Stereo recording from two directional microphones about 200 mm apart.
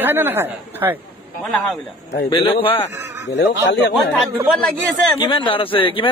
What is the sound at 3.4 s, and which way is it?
Speech, 60° left (ahead or behind).